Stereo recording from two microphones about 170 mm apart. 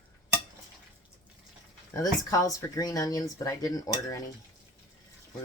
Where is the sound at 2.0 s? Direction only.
20° left (ahead or behind).